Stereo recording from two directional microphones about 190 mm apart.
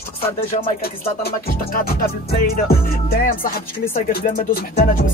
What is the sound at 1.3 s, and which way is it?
Music, 55° left (ahead or behind).